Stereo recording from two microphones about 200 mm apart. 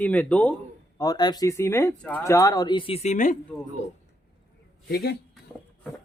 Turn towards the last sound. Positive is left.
turn(degrees=50)  # may be behind; listen again after turning